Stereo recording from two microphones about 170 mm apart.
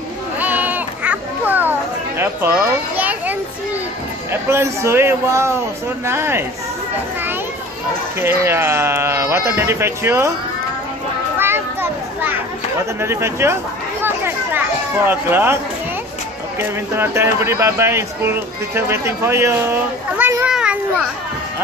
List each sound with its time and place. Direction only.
0.4 s children playing: 10° right (ahead or behind)
4.3 s speech: 15° right (ahead or behind)
8.2 s speech: 15° right (ahead or behind)
11.3 s children playing: 15° right (ahead or behind)
13.0 s speech: 15° right (ahead or behind)
14.0 s chatter: 10° right (ahead or behind)
15.0 s speech: 15° right (ahead or behind)
16.5 s speech: 15° right (ahead or behind)
20.5 s children playing: 5° right (ahead or behind)